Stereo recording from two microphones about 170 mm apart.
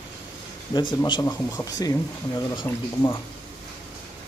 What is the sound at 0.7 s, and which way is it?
Speech, 25° left (ahead or behind).